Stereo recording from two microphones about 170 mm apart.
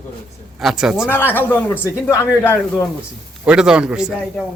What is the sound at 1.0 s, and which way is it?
Speech, 10° left (ahead or behind).